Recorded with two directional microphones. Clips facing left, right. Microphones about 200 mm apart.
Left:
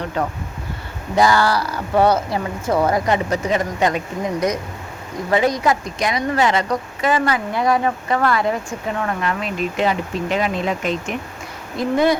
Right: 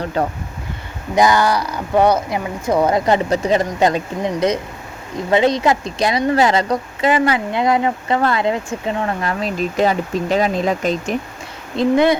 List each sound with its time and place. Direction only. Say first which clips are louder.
0.0 s speech: right 3 dB; 35° right (ahead or behind)
1.1 s speech: right 1 dB; 20° right (ahead or behind)
3.1 s speech: right 3 dB; 30° right (ahead or behind)
9.2 s speech: right 2 dB; 35° right (ahead or behind)
11.8 s speech: right 6 dB; 25° right (ahead or behind)